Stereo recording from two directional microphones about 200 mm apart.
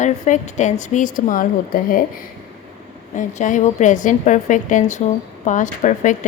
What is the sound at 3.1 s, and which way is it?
Speech, 40° left (ahead or behind).